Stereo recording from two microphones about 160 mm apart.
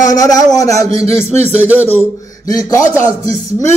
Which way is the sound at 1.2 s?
45° right (ahead or behind).